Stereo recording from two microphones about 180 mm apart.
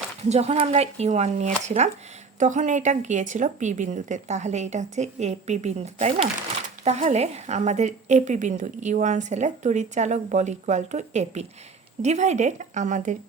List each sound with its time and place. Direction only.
0.3 s a woman's voice: 35° right (ahead or behind)